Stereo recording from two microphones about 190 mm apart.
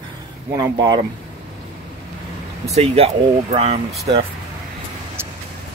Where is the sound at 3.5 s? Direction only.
30° right (ahead or behind).